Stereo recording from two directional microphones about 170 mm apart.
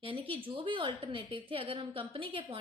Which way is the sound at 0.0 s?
30° right (ahead or behind).